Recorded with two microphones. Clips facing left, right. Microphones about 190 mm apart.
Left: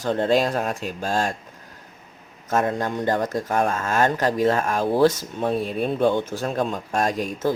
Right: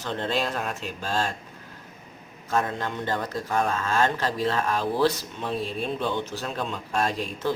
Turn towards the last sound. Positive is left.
turn(degrees=45)  # may be behind; listen again after turning